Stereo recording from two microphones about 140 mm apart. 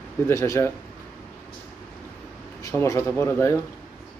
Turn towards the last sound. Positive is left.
turn(degrees=15)  # may be behind; listen again after turning